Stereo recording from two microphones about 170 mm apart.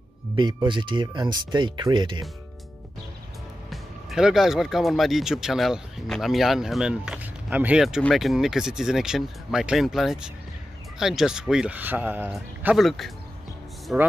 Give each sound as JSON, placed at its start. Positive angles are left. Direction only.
{"t": 0.4, "sound": "speech", "side_deg": -30}
{"t": 3.7, "sound": "speech", "side_deg": 0}